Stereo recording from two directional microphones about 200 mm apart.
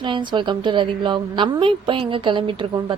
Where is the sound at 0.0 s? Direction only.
25° right (ahead or behind).